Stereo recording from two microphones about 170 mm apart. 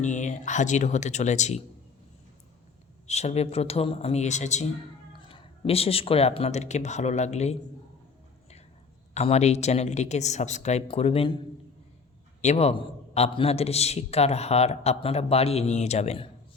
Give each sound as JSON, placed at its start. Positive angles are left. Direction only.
{"t": 0.0, "sound": "speech", "side_deg": 45}
{"t": 3.1, "sound": "a man's voice", "side_deg": 40}
{"t": 9.1, "sound": "a man's voice", "side_deg": 40}
{"t": 12.4, "sound": "a man's voice", "side_deg": 40}